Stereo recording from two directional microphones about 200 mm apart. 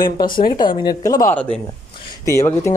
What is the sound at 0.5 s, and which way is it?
Speech, 20° left (ahead or behind).